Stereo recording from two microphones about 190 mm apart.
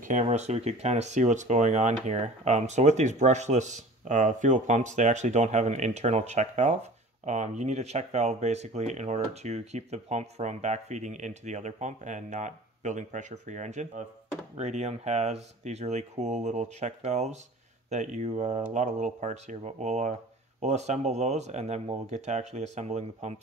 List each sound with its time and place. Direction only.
0.0 s speech: 40° right (ahead or behind)